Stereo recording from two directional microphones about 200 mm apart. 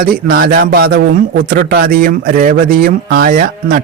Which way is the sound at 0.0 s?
50° right (ahead or behind).